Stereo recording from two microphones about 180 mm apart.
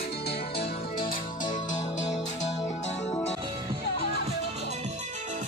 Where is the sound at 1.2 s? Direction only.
45° left (ahead or behind).